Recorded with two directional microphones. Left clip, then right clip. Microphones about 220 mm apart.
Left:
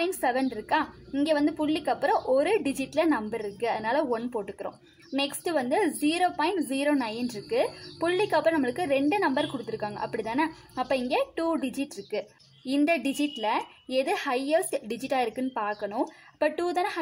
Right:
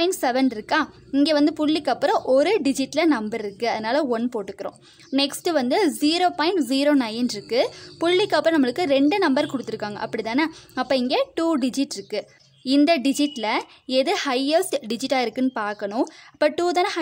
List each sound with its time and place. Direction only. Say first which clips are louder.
0.0 s a woman's voice: right 6 dB; 40° right (ahead or behind)